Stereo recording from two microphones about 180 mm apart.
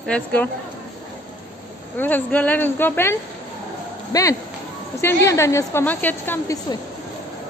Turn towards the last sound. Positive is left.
turn(degrees=20)  # may be behind; listen again after turning